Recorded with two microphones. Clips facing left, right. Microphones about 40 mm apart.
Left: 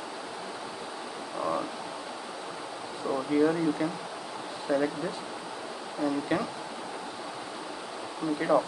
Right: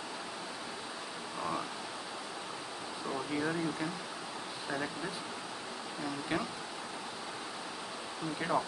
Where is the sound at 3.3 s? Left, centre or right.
Centre.